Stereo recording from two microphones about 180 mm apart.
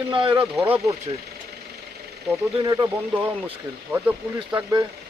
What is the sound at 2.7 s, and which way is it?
Speech, 20° right (ahead or behind).